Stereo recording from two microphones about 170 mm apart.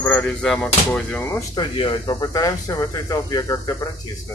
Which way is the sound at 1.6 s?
25° left (ahead or behind).